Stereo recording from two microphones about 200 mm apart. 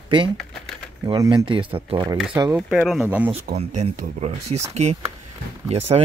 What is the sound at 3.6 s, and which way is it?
Speech, 30° right (ahead or behind).